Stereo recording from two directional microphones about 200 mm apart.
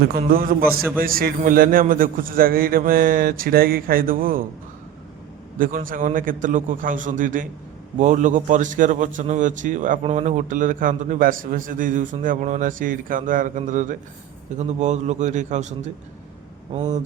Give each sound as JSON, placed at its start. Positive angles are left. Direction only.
{"t": 0.2, "sound": "a man's voice", "side_deg": -45}
{"t": 5.5, "sound": "a man's voice", "side_deg": -45}
{"t": 16.7, "sound": "a man's voice", "side_deg": -35}